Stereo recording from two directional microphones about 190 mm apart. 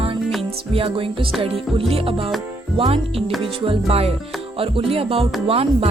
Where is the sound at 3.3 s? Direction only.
Centre (ahead or behind).